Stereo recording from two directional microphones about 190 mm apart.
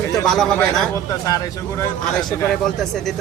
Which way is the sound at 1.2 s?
20° left (ahead or behind).